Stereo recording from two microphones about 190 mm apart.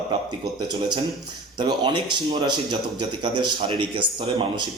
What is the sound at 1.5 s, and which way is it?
Speech, 20° right (ahead or behind).